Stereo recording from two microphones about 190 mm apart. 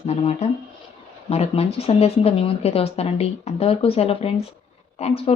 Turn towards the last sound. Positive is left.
turn(degrees=30)  # may be behind; listen again after turning